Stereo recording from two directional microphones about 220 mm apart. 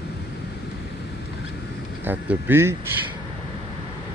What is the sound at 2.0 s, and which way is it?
Speech, 10° right (ahead or behind).